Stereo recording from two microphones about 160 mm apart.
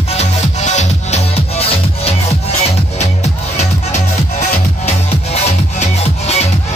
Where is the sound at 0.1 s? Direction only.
45° left (ahead or behind).